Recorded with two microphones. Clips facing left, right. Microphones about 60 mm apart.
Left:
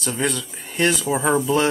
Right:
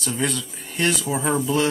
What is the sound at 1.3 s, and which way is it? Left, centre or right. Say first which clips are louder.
Speech: left 2 dB; left.